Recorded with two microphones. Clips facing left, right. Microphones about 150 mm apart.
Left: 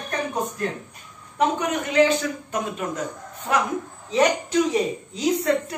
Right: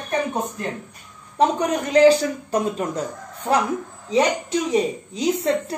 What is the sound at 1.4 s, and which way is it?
A man's voice, 35° right (ahead or behind).